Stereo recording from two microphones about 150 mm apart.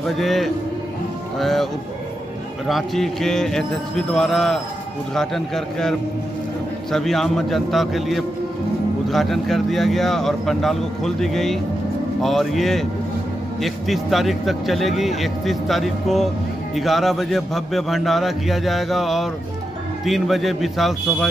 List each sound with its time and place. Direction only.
0.2 s speech: centre (ahead or behind)